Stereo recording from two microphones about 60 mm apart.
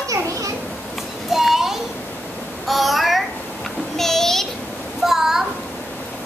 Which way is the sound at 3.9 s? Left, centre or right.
Centre.